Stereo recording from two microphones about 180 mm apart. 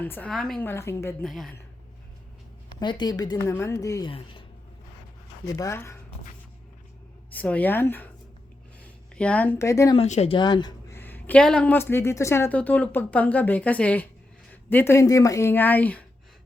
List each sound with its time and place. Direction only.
0.0 s speech: 10° left (ahead or behind)
1.2 s a woman's voice: centre (ahead or behind)
2.7 s speech: 25° left (ahead or behind)
5.5 s speech: 15° left (ahead or behind)
7.3 s speech: 10° left (ahead or behind)
9.1 s speech: 5° left (ahead or behind)
9.9 s speech: 35° left (ahead or behind); by 16.0 s 10° left (ahead or behind)